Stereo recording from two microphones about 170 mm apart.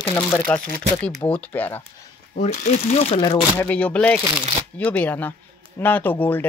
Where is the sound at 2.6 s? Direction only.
45° left (ahead or behind).